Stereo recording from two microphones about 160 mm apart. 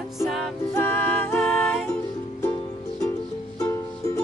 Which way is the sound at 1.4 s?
Centre (ahead or behind).